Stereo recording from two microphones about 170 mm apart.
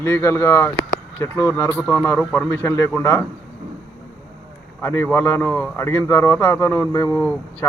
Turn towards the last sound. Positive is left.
turn(degrees=10)  # may be behind; listen again after turning